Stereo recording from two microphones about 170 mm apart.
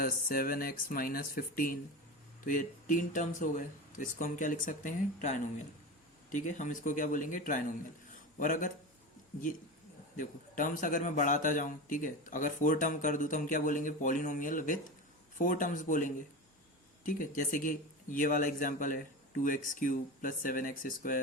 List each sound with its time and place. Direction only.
0.0 s a man's voice: 60° left (ahead or behind)
10.2 s a man's voice: 50° left (ahead or behind)